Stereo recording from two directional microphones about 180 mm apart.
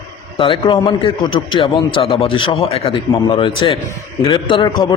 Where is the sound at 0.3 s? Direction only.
30° left (ahead or behind).